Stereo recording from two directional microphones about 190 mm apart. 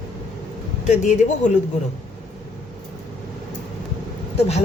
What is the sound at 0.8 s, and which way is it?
Speech, 40° left (ahead or behind).